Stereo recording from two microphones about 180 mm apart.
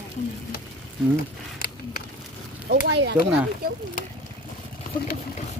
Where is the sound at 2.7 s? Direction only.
70° right (ahead or behind).